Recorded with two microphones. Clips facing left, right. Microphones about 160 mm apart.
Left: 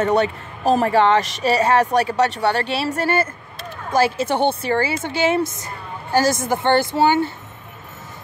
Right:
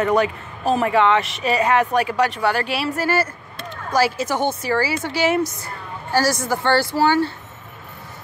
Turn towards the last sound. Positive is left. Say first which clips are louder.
# left 1 dB
turn(degrees=20)  # may be behind; listen again after turning